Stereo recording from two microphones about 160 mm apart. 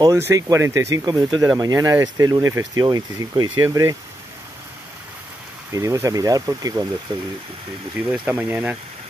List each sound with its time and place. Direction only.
0.0 s speech: 20° right (ahead or behind)
5.7 s speech: 20° right (ahead or behind)
8.1 s speech: 10° right (ahead or behind)